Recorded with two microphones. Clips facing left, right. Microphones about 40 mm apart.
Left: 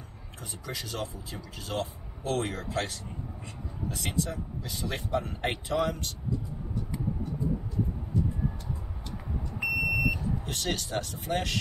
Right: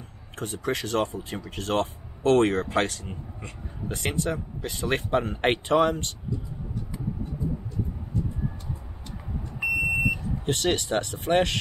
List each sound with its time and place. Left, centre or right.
0.4 s speech: right
9.7 s smoke detector: right
10.4 s speech: right